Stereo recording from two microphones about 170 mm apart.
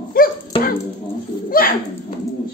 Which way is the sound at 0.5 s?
30° left (ahead or behind).